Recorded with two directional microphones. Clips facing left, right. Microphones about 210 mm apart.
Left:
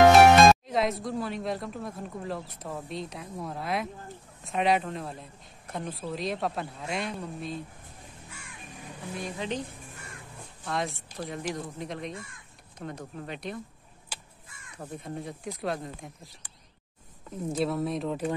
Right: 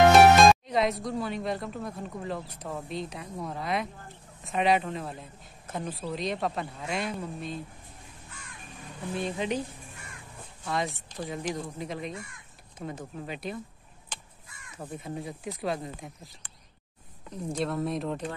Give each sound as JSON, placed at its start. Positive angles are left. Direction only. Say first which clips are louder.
{"t": 0.1, "sound": "a woman's voice", "louder": "left 1 dB", "side_deg": 0}
{"t": 9.1, "sound": "a woman's voice", "louder": "right 4 dB", "side_deg": -25}
{"t": 10.6, "sound": "a woman's voice", "louder": "right 1 dB", "side_deg": 0}
{"t": 14.1, "sound": "crow", "louder": "even", "side_deg": 10}
{"t": 14.8, "sound": "a woman's voice", "louder": "right 1 dB", "side_deg": -5}
{"t": 17.3, "sound": "a woman's voice", "louder": "left 2 dB", "side_deg": 5}